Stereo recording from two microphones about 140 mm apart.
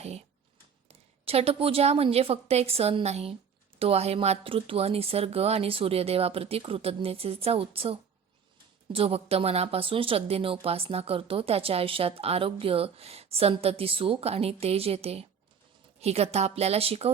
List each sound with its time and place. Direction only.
0.9 s speech: 45° right (ahead or behind)